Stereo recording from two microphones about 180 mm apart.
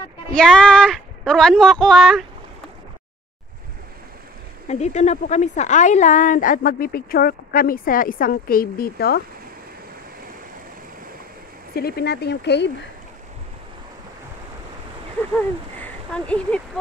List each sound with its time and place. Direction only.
0.3 s speech: 5° left (ahead or behind)
4.6 s a woman's voice: 40° left (ahead or behind); by 9.2 s 60° left (ahead or behind)
11.7 s speech: 60° left (ahead or behind)
15.8 s speech: 5° left (ahead or behind)